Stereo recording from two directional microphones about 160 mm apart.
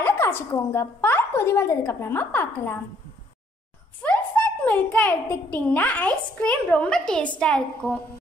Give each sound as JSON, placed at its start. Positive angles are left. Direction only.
{"t": 0.0, "sound": "a woman's voice", "side_deg": 15}
{"t": 4.0, "sound": "a child's voice", "side_deg": 10}